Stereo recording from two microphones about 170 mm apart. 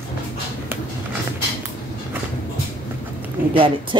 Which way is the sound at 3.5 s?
30° right (ahead or behind).